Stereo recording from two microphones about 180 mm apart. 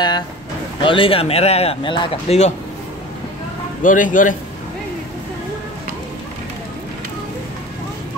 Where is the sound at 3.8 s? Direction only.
45° left (ahead or behind).